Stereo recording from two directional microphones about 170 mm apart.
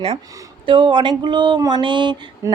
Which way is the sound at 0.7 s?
30° right (ahead or behind).